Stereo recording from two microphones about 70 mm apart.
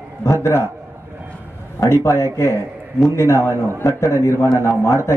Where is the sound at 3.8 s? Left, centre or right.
Left.